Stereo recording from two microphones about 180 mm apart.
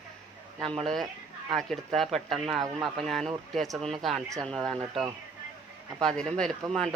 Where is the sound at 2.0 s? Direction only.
Centre (ahead or behind).